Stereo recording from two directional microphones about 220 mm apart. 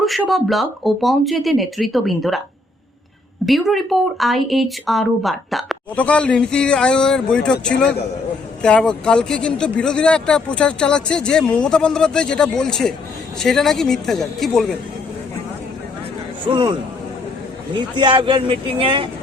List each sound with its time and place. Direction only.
0.0 s a woman's voice: centre (ahead or behind)
3.4 s a woman's voice: centre (ahead or behind)
8.6 s a woman's voice: 5° left (ahead or behind)
16.5 s speech: 20° right (ahead or behind)
17.7 s speech: 20° right (ahead or behind)